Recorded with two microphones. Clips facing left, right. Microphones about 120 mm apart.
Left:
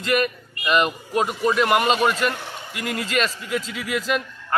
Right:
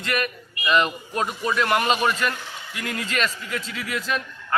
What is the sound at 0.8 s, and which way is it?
A man's voice, 10° left (ahead or behind).